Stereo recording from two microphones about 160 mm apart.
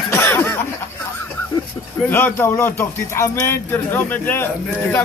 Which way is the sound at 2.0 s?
15° left (ahead or behind).